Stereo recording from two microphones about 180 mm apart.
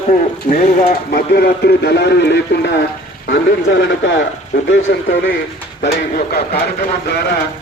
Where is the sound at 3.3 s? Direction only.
90° left.